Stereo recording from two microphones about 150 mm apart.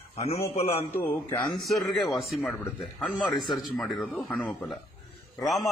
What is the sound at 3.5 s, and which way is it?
Speech, centre (ahead or behind).